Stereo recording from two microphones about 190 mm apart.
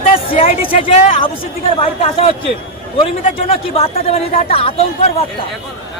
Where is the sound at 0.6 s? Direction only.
30° left (ahead or behind).